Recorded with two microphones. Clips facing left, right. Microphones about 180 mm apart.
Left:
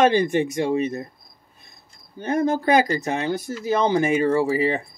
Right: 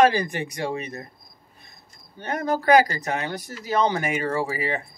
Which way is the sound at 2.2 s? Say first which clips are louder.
Left 3 dB; 25° left (ahead or behind).